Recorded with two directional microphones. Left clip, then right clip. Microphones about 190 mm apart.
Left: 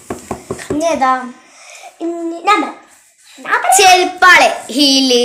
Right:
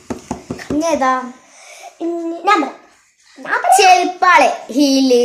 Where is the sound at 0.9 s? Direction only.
5° right (ahead or behind).